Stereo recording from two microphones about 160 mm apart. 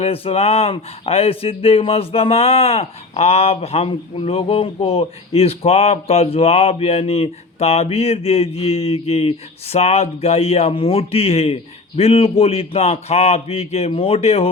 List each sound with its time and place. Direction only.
0.0 s speech: 40° left (ahead or behind)